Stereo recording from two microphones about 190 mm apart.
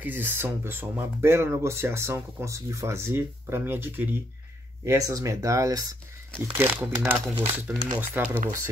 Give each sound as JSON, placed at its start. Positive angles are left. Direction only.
{"t": 0.0, "sound": "speech", "side_deg": -10}
{"t": 6.4, "sound": "speech", "side_deg": -5}